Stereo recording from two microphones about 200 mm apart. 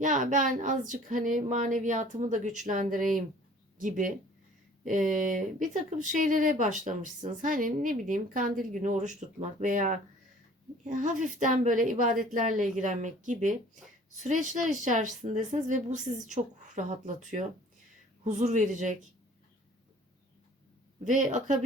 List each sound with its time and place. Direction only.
0.0 s speech: 40° right (ahead or behind)
21.0 s speech: 40° right (ahead or behind)